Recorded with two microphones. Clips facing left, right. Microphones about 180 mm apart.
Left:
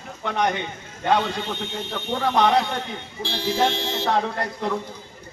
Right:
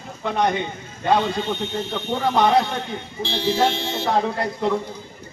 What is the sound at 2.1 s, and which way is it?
Speech, 5° right (ahead or behind).